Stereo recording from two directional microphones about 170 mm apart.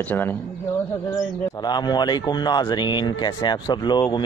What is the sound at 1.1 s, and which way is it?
Speech, 25° left (ahead or behind).